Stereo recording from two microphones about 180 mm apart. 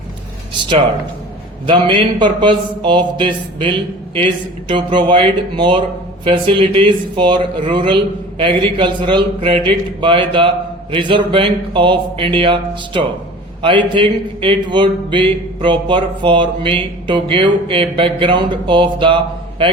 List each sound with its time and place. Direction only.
1.6 s speech: 25° right (ahead or behind)